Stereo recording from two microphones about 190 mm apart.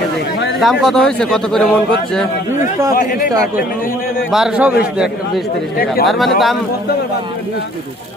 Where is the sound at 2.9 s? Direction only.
45° left (ahead or behind).